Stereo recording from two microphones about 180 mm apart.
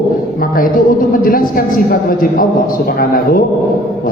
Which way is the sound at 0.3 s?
50° left (ahead or behind).